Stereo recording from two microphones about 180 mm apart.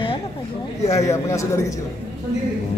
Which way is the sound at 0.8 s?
15° left (ahead or behind).